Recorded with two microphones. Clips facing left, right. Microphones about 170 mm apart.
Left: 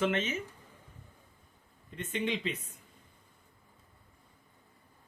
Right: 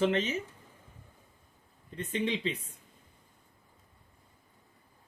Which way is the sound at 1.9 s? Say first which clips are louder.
Right 2 dB; 35° right (ahead or behind).